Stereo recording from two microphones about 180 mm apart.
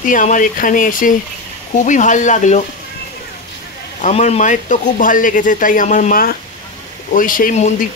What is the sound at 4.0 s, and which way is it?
Speech, 40° left (ahead or behind).